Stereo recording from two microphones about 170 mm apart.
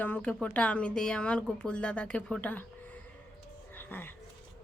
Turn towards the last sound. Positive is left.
turn(degrees=10)  # may be behind; listen again after turning